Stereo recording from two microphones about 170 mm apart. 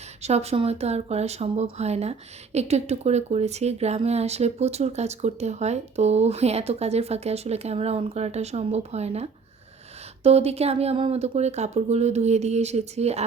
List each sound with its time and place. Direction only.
0.2 s speech: 40° right (ahead or behind)